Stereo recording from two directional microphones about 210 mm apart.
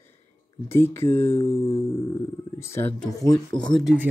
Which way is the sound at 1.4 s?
25° left (ahead or behind).